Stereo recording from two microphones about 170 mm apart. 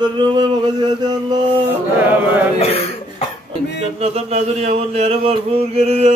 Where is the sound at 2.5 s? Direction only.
35° left (ahead or behind).